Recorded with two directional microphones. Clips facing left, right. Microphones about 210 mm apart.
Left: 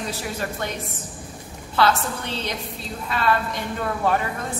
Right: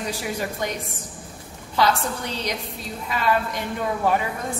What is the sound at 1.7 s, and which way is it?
A woman's voice, 15° right (ahead or behind).